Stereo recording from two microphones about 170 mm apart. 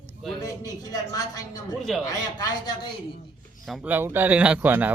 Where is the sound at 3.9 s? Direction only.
10° right (ahead or behind).